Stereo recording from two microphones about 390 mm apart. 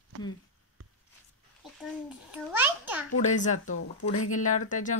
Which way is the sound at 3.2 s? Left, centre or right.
Centre.